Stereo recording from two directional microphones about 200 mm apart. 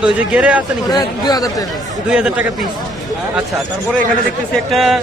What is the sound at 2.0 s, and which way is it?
Speech, 5° right (ahead or behind).